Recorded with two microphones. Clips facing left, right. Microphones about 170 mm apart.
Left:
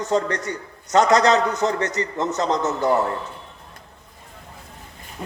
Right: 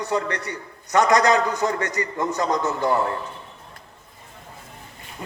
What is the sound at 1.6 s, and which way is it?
A man's voice, 30° left (ahead or behind).